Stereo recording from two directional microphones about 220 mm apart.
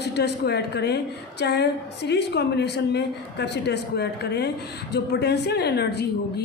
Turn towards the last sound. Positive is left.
turn(degrees=45)  # may be behind; listen again after turning